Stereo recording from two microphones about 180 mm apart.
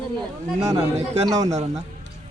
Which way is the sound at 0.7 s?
35° right (ahead or behind).